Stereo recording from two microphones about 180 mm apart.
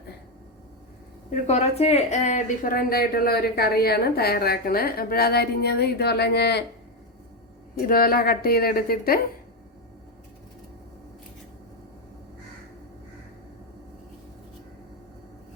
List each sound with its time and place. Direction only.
1.3 s a woman's voice: 40° left (ahead or behind); by 6.7 s 65° left (ahead or behind)
7.8 s a woman's voice: 55° left (ahead or behind)